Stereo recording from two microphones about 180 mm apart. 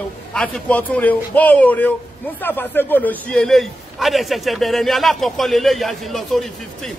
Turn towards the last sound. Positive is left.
turn(degrees=0)  # may be behind; listen again after turning